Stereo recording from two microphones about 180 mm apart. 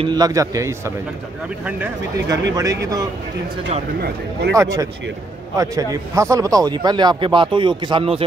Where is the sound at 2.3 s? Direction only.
20° right (ahead or behind).